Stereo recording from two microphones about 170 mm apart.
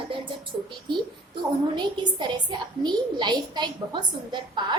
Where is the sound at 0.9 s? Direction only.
30° right (ahead or behind).